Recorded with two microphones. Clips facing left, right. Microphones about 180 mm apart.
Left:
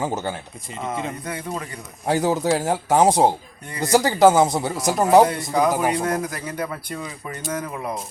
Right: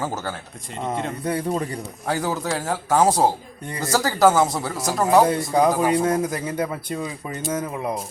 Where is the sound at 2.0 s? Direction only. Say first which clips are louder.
Left 5 dB; 25° left (ahead or behind).